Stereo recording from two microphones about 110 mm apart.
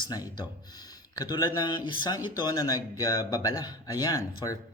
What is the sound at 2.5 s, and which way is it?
Speech, 35° left (ahead or behind).